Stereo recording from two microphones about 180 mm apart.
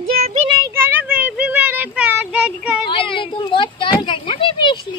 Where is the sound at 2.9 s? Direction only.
30° left (ahead or behind).